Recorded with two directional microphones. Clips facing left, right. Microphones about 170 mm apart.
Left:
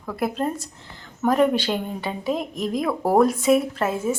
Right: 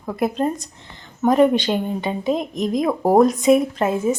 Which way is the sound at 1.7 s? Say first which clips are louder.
Right 4 dB; 10° right (ahead or behind).